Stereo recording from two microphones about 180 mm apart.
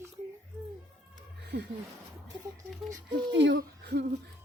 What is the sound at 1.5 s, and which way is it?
Speech, 65° right (ahead or behind).